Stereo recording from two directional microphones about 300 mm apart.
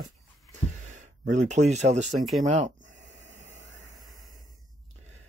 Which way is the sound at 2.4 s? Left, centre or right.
Right.